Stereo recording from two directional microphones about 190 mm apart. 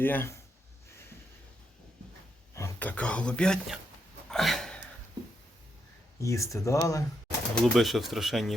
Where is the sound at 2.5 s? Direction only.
10° left (ahead or behind).